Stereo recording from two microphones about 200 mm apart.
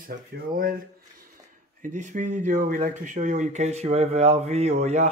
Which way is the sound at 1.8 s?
40° right (ahead or behind).